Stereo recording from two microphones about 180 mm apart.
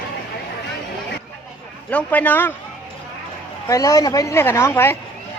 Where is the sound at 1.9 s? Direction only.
10° left (ahead or behind).